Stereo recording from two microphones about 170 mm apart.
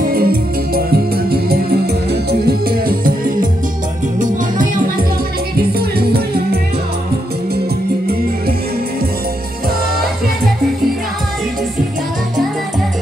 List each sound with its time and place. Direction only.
0.0 s music: 60° right (ahead or behind)
5.8 s music: 65° right (ahead or behind)